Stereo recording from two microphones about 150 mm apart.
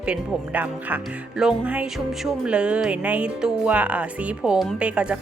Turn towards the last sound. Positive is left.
turn(degrees=-5)  # may be behind; listen again after turning